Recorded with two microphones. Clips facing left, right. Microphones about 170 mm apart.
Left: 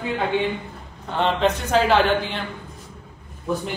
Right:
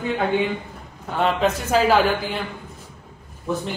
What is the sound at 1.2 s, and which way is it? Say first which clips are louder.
A man's voice: even; 5° right (ahead or behind).